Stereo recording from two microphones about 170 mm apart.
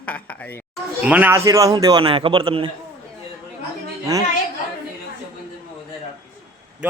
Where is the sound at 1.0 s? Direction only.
10° right (ahead or behind); by 2.7 s 30° right (ahead or behind).